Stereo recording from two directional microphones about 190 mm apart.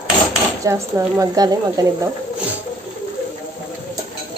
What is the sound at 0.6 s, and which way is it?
Speech, 15° right (ahead or behind).